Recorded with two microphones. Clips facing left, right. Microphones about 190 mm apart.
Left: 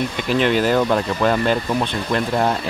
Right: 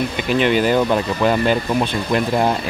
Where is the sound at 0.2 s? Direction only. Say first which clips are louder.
Right 1 dB; centre (ahead or behind).